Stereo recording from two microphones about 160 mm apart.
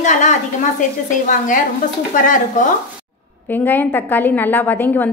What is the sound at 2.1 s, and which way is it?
Speech, 55° left (ahead or behind).